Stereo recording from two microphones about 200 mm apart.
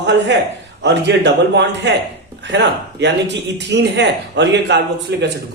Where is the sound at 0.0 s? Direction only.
60° right (ahead or behind).